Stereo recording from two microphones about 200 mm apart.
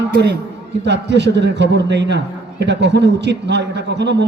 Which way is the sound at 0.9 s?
60° right (ahead or behind).